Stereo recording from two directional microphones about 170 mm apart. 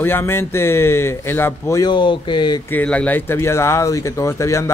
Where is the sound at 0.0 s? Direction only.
15° left (ahead or behind).